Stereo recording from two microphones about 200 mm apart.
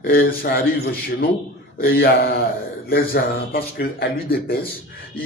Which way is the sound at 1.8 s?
50° left (ahead or behind).